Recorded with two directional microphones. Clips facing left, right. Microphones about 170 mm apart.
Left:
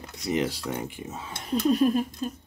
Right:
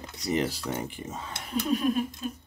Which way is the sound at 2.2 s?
40° left (ahead or behind).